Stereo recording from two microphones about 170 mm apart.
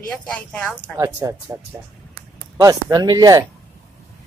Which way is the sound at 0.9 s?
20° right (ahead or behind).